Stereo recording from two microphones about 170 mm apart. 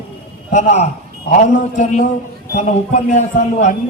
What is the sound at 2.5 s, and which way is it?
A man's voice, 45° left (ahead or behind).